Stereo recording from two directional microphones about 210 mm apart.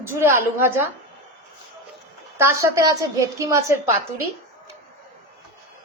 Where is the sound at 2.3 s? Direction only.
15° right (ahead or behind).